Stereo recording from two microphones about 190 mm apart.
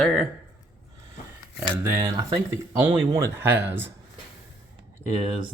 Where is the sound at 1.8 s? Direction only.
15° right (ahead or behind).